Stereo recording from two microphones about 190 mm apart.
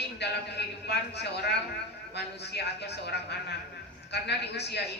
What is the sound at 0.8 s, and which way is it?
Speech, 60° left (ahead or behind).